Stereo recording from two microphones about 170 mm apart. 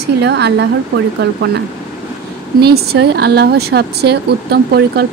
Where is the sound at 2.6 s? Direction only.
70° right (ahead or behind).